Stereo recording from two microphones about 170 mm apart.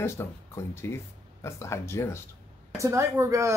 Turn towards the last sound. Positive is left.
turn(degrees=-20)  # may be behind; listen again after turning